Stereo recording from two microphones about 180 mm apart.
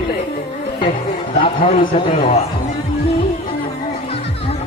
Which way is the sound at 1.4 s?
30° left (ahead or behind).